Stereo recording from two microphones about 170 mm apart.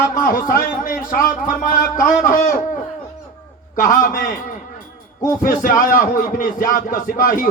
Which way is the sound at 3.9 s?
50° left (ahead or behind).